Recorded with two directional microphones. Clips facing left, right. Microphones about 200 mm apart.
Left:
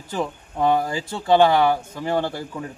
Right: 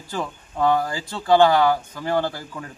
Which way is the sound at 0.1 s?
20° left (ahead or behind).